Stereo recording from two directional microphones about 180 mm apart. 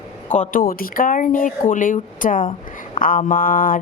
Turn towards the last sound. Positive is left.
turn(degrees=50)  # may be behind; listen again after turning